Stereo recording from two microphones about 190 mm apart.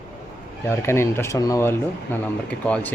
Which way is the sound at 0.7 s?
15° left (ahead or behind).